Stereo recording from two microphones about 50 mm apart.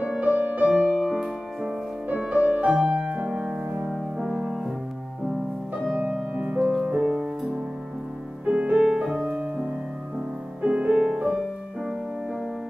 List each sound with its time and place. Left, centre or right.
0.2 s music: right
0.7 s music: centre
0.9 s music: centre
2.1 s music: right
2.7 s music: centre
3.8 s music: centre
6.3 s music: right
7.0 s music: centre
8.5 s music: right
11.3 s music: centre